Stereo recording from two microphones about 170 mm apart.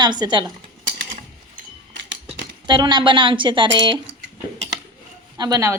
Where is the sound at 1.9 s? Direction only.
90° right.